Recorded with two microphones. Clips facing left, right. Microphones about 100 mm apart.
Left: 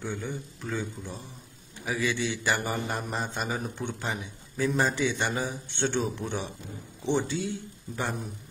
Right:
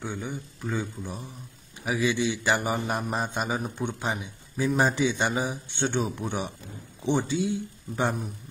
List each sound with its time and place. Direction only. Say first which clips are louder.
0.0 s a man's voice: even; 15° right (ahead or behind)